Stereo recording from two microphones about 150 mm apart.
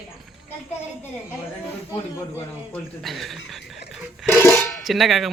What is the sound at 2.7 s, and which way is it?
Speech, centre (ahead or behind).